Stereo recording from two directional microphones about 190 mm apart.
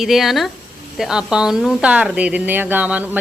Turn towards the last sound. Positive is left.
turn(degrees=-10)  # may be behind; listen again after turning